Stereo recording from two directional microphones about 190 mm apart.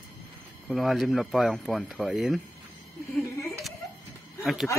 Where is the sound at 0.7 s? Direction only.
5° right (ahead or behind).